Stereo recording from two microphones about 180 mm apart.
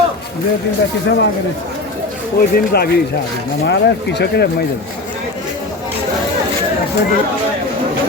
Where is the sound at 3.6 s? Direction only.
75° left (ahead or behind).